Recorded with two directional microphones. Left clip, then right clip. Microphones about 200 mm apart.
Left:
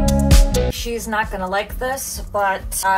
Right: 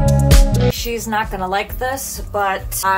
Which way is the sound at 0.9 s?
15° right (ahead or behind).